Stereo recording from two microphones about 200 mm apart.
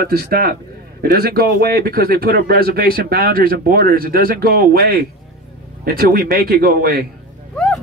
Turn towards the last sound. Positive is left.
turn(degrees=5)  # may be behind; listen again after turning